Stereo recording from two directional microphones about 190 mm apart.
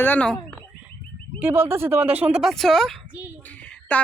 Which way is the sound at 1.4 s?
10° right (ahead or behind).